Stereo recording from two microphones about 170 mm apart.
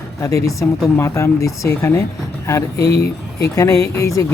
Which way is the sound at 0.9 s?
15° left (ahead or behind).